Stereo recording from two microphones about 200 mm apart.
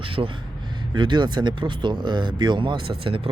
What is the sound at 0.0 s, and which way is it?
Speech, 25° right (ahead or behind).